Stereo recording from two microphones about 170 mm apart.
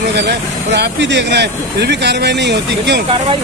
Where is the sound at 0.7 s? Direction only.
90° right.